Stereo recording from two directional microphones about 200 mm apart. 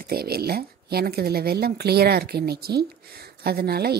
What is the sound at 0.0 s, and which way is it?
Speech, 50° right (ahead or behind).